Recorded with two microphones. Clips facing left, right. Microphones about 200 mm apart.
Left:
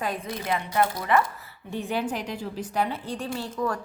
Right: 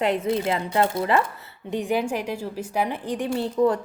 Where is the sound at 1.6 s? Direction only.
15° right (ahead or behind).